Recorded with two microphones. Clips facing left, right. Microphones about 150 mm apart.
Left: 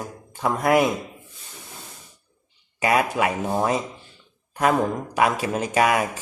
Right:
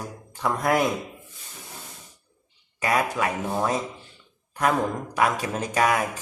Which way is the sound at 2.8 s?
10° left (ahead or behind).